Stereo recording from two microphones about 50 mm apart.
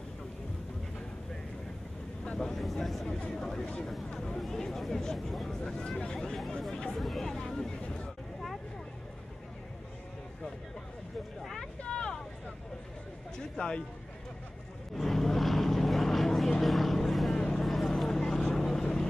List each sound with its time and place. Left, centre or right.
2.2 s vehicle: centre
3.1 s speech: centre
4.1 s a sound: centre
4.4 s speech: centre
6.1 s speech: centre
6.7 s chatter: centre
7.0 s hubbub: centre
11.8 s vehicle: centre
13.6 s speech: centre
15.0 s vehicle: centre